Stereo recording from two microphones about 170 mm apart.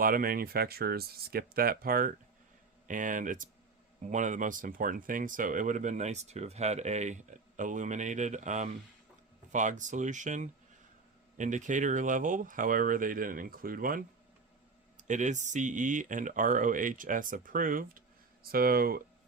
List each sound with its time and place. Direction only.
0.0 s speech: 60° right (ahead or behind)
14.9 s speech: 45° right (ahead or behind); by 19.0 s 60° right (ahead or behind)